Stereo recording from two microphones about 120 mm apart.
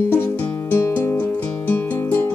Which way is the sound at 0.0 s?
20° left (ahead or behind).